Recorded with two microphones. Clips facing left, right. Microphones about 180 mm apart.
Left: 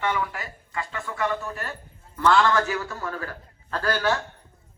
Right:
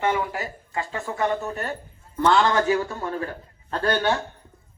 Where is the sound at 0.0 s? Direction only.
40° right (ahead or behind).